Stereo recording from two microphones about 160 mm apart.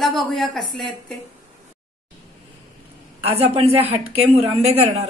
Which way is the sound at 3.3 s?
40° right (ahead or behind).